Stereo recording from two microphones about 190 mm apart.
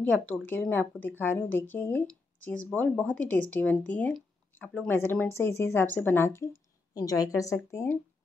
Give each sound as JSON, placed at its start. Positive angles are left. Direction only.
{"t": 0.1, "sound": "speech", "side_deg": 5}